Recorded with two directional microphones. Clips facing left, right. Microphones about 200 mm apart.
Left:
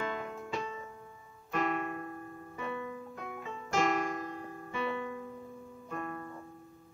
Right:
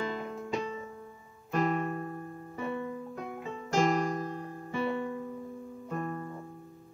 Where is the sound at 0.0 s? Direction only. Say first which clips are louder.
Right 2 dB; 35° right (ahead or behind).